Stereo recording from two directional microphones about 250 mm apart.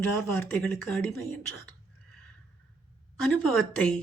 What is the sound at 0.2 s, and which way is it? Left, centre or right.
Speech, centre.